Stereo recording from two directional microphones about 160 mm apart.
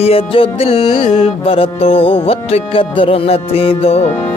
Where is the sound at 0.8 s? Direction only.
25° left (ahead or behind).